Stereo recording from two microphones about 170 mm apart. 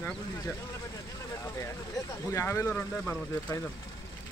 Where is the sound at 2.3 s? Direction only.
20° left (ahead or behind).